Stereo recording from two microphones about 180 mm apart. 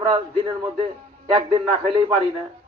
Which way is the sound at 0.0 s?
25° right (ahead or behind).